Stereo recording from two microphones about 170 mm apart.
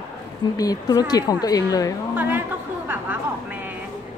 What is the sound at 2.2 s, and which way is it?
Chatter, 10° right (ahead or behind).